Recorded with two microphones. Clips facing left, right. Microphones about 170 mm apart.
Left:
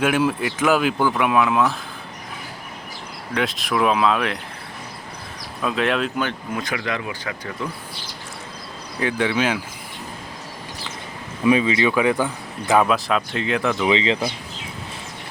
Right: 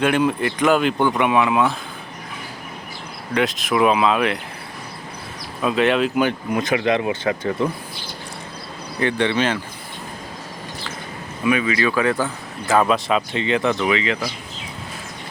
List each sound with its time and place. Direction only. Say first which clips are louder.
0.0 s speech: right 1 dB; 5° left (ahead or behind)
3.3 s speech: right 3 dB; centre (ahead or behind)
5.6 s speech: right 4 dB; centre (ahead or behind)
6.1 s speech: right 6 dB; 15° right (ahead or behind)
9.0 s speech: right 2 dB; 5° left (ahead or behind)
11.4 s speech: left 2 dB; 25° left (ahead or behind)
12.8 s speech: right 1 dB; centre (ahead or behind)
13.8 s speech: left 1 dB; 25° left (ahead or behind)